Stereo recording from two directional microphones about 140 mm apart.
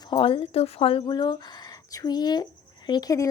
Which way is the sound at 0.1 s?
40° left (ahead or behind).